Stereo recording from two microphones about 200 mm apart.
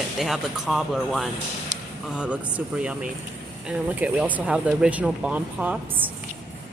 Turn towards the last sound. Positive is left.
turn(degrees=-10)  # may be behind; listen again after turning